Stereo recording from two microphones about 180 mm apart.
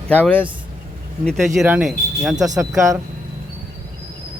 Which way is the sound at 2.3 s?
20° right (ahead or behind).